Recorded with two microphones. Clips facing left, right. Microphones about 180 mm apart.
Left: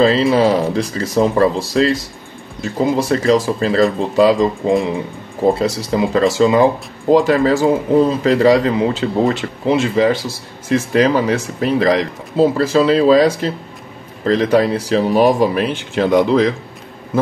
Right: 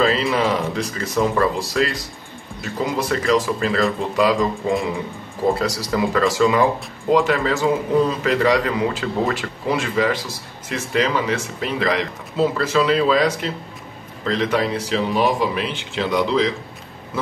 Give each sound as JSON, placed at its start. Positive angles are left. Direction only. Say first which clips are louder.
{"t": 0.3, "sound": "speech", "louder": "left 7 dB", "side_deg": 35}